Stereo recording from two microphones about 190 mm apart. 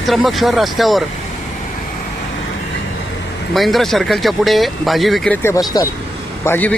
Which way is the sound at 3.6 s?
Centre (ahead or behind).